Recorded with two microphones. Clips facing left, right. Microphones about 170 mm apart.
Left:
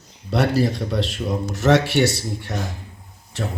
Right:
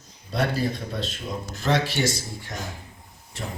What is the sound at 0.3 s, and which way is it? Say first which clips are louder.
Speech: left 6 dB; 75° left (ahead or behind).